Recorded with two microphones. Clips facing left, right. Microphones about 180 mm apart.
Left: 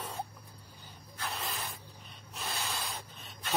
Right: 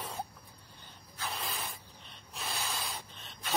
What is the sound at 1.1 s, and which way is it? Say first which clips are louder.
Spray: even; centre (ahead or behind).